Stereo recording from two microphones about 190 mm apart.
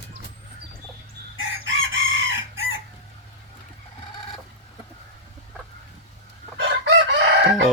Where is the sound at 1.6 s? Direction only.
90° right.